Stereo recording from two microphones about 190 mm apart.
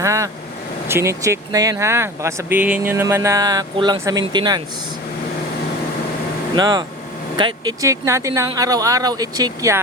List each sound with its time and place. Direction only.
0.0 s speech: 15° right (ahead or behind)
6.6 s speech: 20° right (ahead or behind)